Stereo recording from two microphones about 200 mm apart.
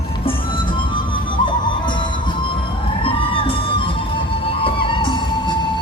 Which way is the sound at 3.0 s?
25° left (ahead or behind).